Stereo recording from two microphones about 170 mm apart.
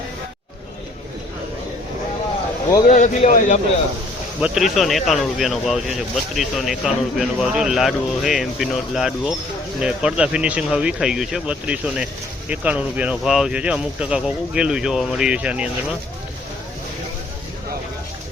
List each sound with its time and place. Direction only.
2.8 s speech: 45° left (ahead or behind)
4.4 s speech: 5° right (ahead or behind)